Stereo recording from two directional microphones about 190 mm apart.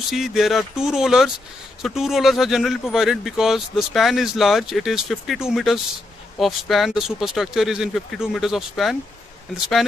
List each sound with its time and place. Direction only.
0.1 s speech: centre (ahead or behind)